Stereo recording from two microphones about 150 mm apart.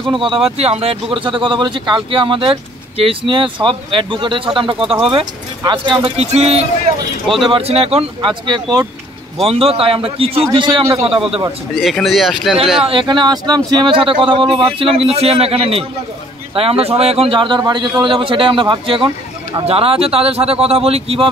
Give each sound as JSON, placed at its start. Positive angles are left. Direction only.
{"t": 0.1, "sound": "speech", "side_deg": -35}
{"t": 9.4, "sound": "speech", "side_deg": -40}
{"t": 11.8, "sound": "speech", "side_deg": 0}
{"t": 12.8, "sound": "speech", "side_deg": -35}